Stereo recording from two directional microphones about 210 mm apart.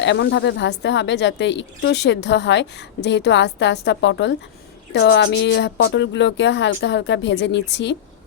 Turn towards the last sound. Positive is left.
turn(degrees=55)  # may be behind; listen again after turning